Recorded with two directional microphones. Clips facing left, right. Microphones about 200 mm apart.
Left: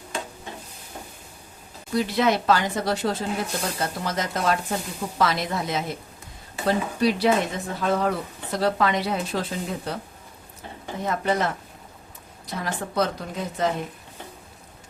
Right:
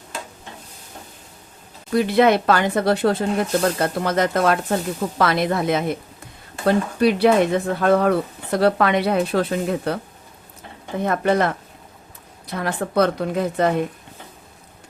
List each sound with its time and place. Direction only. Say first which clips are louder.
1.9 s speech: right 6 dB; 60° right (ahead or behind)
7.0 s speech: right 6 dB; 60° right (ahead or behind)
11.0 s speech: right 5 dB; 60° right (ahead or behind)
12.5 s speech: right 6 dB; 60° right (ahead or behind)